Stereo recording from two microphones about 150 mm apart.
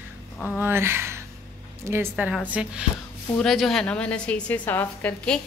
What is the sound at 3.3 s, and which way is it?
A woman's voice, centre (ahead or behind).